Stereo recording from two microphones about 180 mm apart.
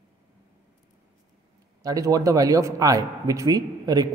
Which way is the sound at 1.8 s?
20° right (ahead or behind).